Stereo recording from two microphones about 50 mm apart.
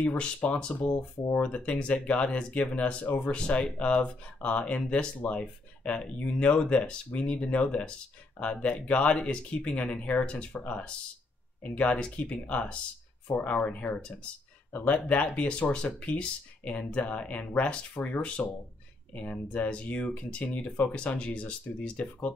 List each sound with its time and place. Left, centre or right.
0.0 s speech: left